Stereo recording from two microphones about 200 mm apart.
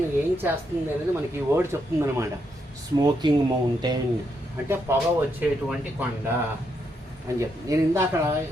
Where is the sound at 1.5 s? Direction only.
15° right (ahead or behind).